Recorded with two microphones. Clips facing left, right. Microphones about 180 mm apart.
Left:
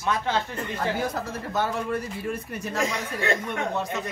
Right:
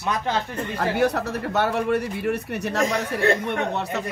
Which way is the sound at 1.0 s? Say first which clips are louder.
Right 7 dB; 70° right (ahead or behind).